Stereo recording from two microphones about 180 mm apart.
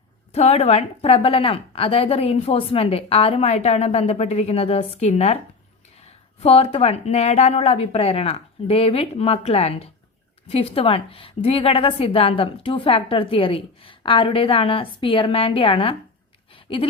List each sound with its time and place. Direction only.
0.3 s a woman's voice: 35° left (ahead or behind)
6.4 s a woman's voice: 30° left (ahead or behind)